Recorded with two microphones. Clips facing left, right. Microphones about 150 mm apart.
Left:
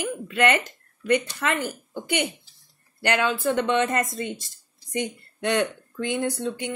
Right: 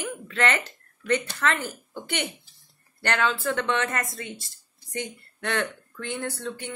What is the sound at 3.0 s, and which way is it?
Speech, 15° left (ahead or behind).